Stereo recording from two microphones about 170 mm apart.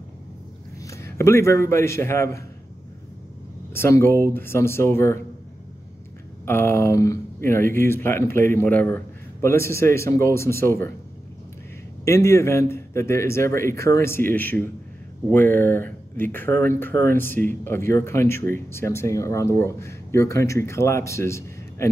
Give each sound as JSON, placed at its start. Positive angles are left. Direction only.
{"t": 0.8, "sound": "a man's voice", "side_deg": 15}
{"t": 3.7, "sound": "speech", "side_deg": 15}
{"t": 6.4, "sound": "speech", "side_deg": 15}
{"t": 12.0, "sound": "speech", "side_deg": 15}